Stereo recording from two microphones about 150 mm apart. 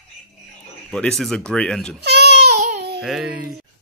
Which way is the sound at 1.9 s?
90° right.